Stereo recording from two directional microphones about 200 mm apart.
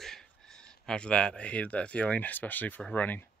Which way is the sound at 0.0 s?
5° left (ahead or behind).